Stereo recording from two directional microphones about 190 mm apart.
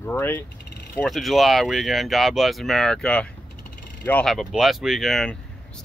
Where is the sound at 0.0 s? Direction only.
10° left (ahead or behind).